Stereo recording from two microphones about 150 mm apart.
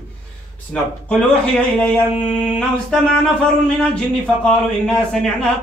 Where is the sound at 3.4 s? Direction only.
5° left (ahead or behind).